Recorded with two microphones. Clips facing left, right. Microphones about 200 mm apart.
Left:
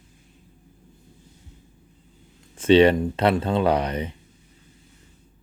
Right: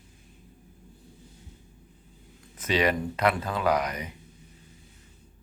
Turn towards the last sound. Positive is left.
turn(degrees=30)  # may be behind; listen again after turning